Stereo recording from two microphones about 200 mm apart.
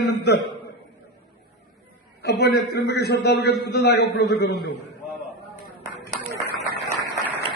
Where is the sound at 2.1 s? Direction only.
55° left (ahead or behind).